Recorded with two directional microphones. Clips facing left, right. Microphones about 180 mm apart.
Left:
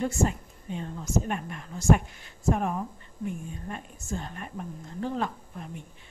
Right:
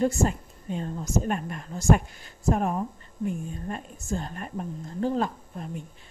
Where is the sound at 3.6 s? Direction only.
40° right (ahead or behind).